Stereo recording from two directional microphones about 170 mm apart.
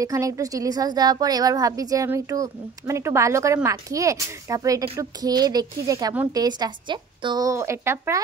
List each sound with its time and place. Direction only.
0.0 s a woman's voice: 20° right (ahead or behind)